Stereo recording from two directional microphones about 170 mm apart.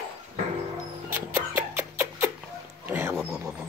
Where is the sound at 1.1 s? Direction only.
15° right (ahead or behind).